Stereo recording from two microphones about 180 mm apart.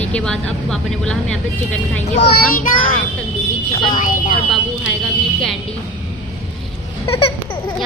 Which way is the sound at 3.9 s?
50° left (ahead or behind).